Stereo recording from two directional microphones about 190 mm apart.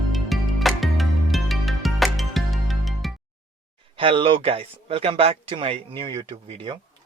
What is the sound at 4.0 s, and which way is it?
A man's voice, 25° right (ahead or behind).